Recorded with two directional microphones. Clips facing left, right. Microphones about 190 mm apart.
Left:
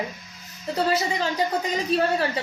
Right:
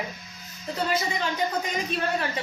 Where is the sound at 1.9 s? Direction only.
35° left (ahead or behind).